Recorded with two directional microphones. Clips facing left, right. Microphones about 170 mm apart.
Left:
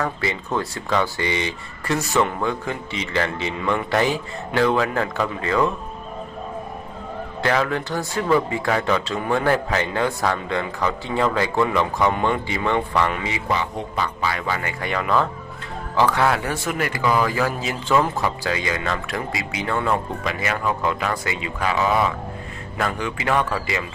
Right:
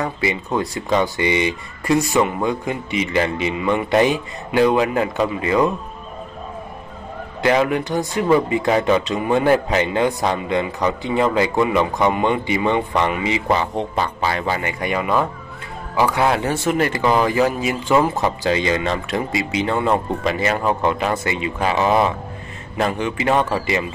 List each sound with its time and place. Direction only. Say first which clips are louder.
0.0 s speech: right 3 dB; 15° right (ahead or behind)
7.4 s speech: right 5 dB; 15° right (ahead or behind)
13.5 s speech: right 2 dB; 35° right (ahead or behind); by 16.3 s 10° right (ahead or behind)
16.3 s speech: right 4 dB; 25° right (ahead or behind)